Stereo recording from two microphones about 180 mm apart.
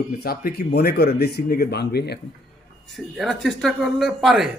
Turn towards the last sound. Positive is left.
turn(degrees=0)  # may be behind; listen again after turning